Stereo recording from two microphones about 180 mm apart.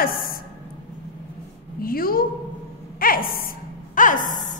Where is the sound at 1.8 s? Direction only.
55° left (ahead or behind).